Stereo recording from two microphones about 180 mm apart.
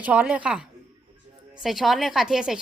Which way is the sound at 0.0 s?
5° right (ahead or behind).